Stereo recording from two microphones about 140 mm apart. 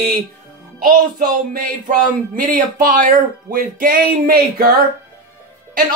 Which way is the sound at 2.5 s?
75° right (ahead or behind).